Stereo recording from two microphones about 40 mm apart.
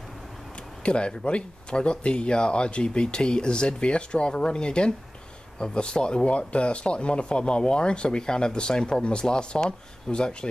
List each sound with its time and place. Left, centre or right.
0.8 s speech: left